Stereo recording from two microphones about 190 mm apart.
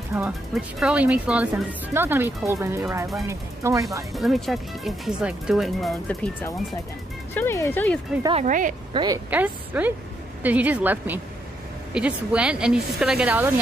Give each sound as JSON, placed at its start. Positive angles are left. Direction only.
{"t": 0.1, "sound": "speech", "side_deg": -10}
{"t": 4.1, "sound": "speech", "side_deg": 0}
{"t": 8.2, "sound": "speech", "side_deg": -25}
{"t": 8.5, "sound": "a woman's voice", "side_deg": -45}
{"t": 8.9, "sound": "speech", "side_deg": -20}
{"t": 9.3, "sound": "speech", "side_deg": -10}